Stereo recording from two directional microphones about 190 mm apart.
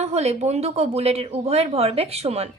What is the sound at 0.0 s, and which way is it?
A woman's voice, 35° right (ahead or behind).